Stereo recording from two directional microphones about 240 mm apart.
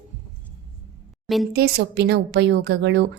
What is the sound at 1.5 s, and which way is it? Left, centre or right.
A woman's voice, right.